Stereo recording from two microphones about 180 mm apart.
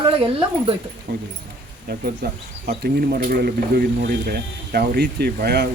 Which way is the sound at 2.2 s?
60° right (ahead or behind).